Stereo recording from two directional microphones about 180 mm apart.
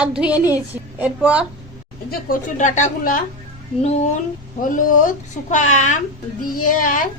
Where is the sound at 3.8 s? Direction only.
35° left (ahead or behind).